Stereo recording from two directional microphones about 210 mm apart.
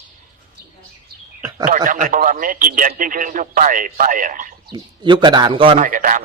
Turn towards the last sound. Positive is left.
turn(degrees=-40)  # may be behind; listen again after turning